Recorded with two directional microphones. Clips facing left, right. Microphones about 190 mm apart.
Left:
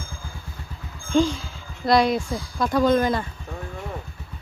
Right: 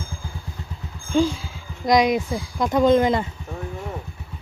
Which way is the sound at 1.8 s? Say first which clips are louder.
Right 1 dB; 15° right (ahead or behind).